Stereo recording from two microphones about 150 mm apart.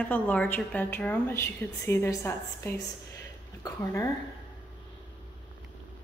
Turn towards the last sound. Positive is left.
turn(degrees=20)  # may be behind; listen again after turning